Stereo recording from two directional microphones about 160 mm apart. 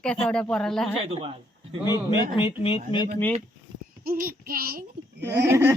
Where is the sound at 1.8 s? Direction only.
25° left (ahead or behind).